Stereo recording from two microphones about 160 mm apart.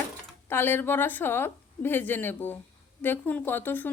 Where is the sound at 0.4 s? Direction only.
15° left (ahead or behind).